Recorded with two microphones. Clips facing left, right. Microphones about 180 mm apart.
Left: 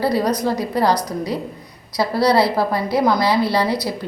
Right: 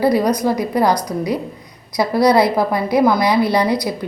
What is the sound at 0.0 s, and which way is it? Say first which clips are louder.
A woman's voice: right 3 dB; 10° right (ahead or behind).